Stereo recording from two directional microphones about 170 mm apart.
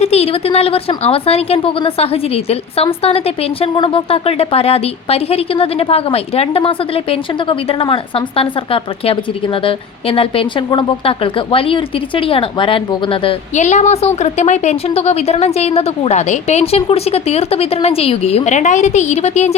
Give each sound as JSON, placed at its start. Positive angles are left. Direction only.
{"t": 0.0, "sound": "a woman's voice", "side_deg": 35}
{"t": 13.5, "sound": "a woman's voice", "side_deg": 45}